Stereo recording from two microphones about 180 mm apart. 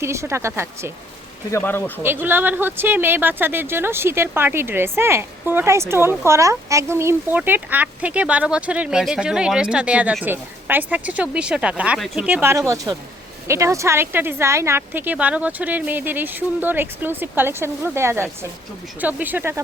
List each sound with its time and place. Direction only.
0.0 s speech: 15° right (ahead or behind)
1.5 s speech: 15° left (ahead or behind)
2.0 s speech: 10° right (ahead or behind)